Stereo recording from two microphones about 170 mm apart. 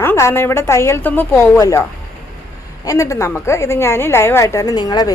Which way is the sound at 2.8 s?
20° left (ahead or behind).